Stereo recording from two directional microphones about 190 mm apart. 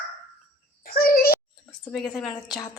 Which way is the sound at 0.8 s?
50° left (ahead or behind).